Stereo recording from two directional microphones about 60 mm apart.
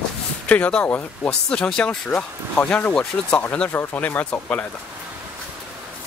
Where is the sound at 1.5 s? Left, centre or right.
Centre.